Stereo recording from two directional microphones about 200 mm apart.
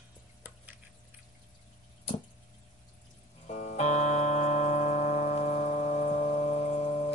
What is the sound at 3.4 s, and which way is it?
Music, 35° left (ahead or behind).